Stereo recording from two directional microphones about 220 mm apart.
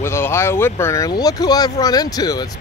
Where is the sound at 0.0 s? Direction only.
10° left (ahead or behind).